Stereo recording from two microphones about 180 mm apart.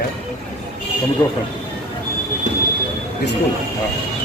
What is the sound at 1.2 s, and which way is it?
Speech, 20° left (ahead or behind).